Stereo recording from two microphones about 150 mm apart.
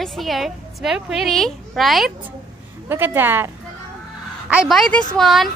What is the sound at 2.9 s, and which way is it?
Speech, 15° right (ahead or behind).